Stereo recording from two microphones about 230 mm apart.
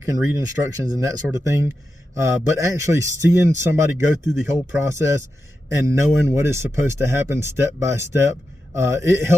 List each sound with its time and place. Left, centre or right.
0.0 s speech: centre